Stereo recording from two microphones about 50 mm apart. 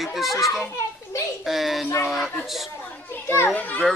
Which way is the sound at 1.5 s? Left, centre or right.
Centre.